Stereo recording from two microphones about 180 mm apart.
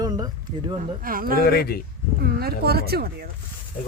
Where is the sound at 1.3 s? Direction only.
60° left (ahead or behind).